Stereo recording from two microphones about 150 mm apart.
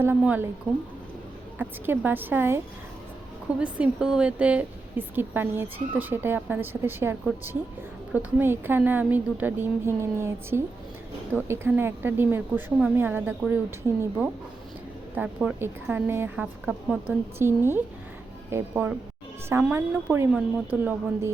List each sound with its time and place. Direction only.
0.0 s a woman's voice: 10° right (ahead or behind)
1.5 s a woman's voice: 15° right (ahead or behind)
3.6 s a woman's voice: 5° right (ahead or behind)
15.1 s a woman's voice: 10° right (ahead or behind)